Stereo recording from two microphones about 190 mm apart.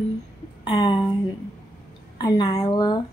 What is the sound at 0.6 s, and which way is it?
Speech, 25° left (ahead or behind).